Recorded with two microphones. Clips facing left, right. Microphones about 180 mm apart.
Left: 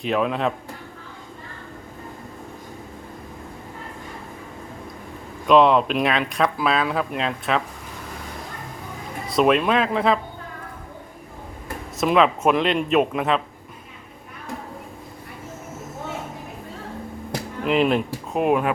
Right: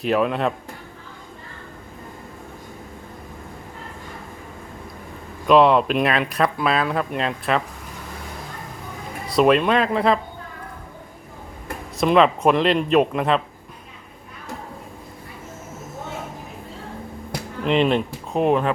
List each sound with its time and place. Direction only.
0.0 s speech: centre (ahead or behind)
5.5 s speech: centre (ahead or behind)
9.3 s speech: centre (ahead or behind)
11.9 s speech: centre (ahead or behind)
17.7 s speech: 5° left (ahead or behind)